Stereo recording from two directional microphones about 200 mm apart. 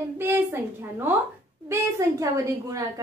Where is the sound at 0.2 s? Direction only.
10° right (ahead or behind).